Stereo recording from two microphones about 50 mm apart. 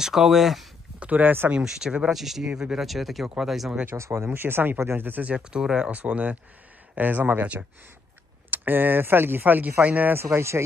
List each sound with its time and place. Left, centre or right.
0.0 s speech: centre
0.9 s speech: right
1.6 s speech: centre
2.9 s speech: centre
3.9 s speech: right
4.3 s speech: right
5.0 s speech: right
5.3 s speech: centre
5.9 s speech: right
8.5 s speech: right
10.2 s speech: right